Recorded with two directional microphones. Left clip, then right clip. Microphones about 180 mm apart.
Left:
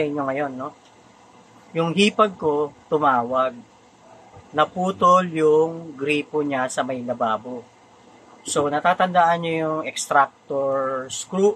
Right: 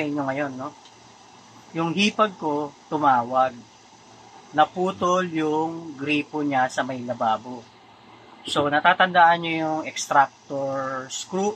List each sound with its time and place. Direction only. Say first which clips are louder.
0.1 s speech: left 2 dB; 20° left (ahead or behind)
1.8 s speech: left 3 dB; 20° left (ahead or behind)
4.6 s speech: left 1 dB; 20° left (ahead or behind)
8.5 s speech: right 1 dB; 25° left (ahead or behind)